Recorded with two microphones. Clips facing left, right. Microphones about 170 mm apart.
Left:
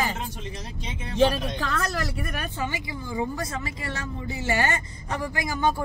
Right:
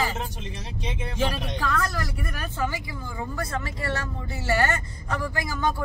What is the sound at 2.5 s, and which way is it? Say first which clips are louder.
Speech: right 1 dB; 15° left (ahead or behind).